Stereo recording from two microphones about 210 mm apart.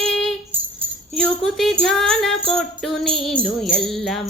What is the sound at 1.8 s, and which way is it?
Speech, centre (ahead or behind).